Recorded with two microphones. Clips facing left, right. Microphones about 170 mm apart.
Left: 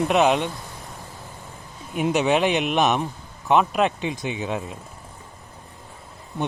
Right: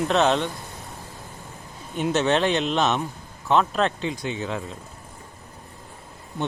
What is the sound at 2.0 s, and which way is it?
Speech, 15° left (ahead or behind).